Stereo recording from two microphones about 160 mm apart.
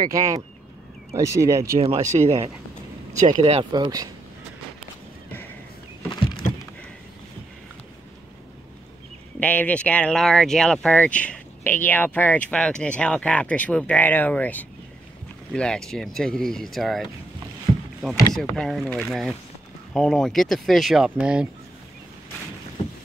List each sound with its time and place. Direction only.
0.0 s speech: 20° right (ahead or behind)
1.8 s speech: 40° right (ahead or behind)
3.7 s speech: 25° right (ahead or behind)
6.0 s a sound: 30° left (ahead or behind)
9.4 s speech: 10° left (ahead or behind); by 21.5 s 5° right (ahead or behind)